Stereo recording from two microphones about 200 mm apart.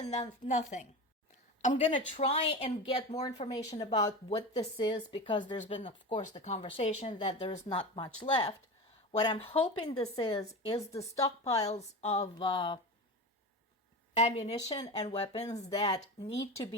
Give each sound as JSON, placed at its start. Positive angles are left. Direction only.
{"t": 0.4, "sound": "a woman's voice", "side_deg": 35}
{"t": 1.7, "sound": "speech", "side_deg": 25}
{"t": 10.7, "sound": "a woman's voice", "side_deg": 20}
{"t": 11.7, "sound": "a woman's voice", "side_deg": 35}
{"t": 14.1, "sound": "a woman's voice", "side_deg": 30}
{"t": 14.7, "sound": "speech", "side_deg": 20}
{"t": 15.1, "sound": "a woman's voice", "side_deg": 30}